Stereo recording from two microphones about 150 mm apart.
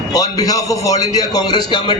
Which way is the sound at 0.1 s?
25° left (ahead or behind).